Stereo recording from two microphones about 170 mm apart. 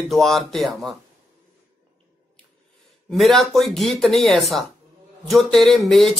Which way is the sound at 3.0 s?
Centre (ahead or behind).